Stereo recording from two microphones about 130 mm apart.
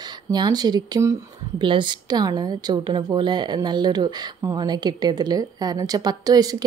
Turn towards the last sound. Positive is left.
turn(degrees=-30)  # may be behind; listen again after turning